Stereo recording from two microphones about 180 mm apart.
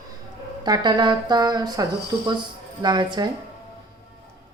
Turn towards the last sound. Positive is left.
turn(degrees=-25)  # may be behind; listen again after turning